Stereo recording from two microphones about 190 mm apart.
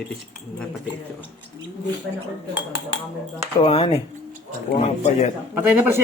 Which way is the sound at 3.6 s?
30° left (ahead or behind).